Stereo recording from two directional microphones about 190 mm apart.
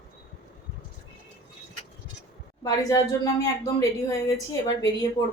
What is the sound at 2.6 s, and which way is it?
Speech, 20° left (ahead or behind).